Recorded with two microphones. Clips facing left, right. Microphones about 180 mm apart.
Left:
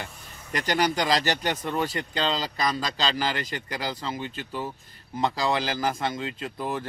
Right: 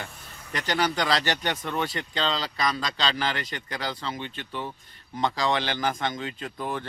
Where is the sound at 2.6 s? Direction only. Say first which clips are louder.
Right 1 dB; 35° left (ahead or behind).